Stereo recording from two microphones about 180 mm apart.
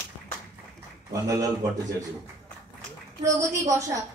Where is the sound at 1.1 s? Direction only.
20° right (ahead or behind).